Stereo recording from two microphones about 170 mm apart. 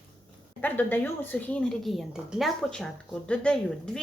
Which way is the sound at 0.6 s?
10° left (ahead or behind).